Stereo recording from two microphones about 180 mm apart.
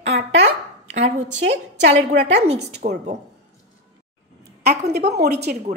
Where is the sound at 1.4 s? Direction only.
85° right.